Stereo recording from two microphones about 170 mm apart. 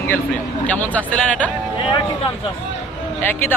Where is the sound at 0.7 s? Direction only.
10° left (ahead or behind).